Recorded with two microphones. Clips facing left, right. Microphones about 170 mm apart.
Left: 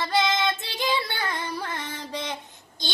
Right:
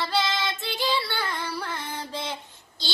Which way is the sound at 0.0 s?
20° left (ahead or behind).